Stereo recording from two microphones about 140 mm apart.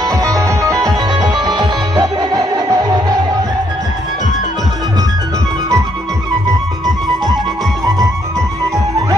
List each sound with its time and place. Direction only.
0.0 s music: 25° right (ahead or behind)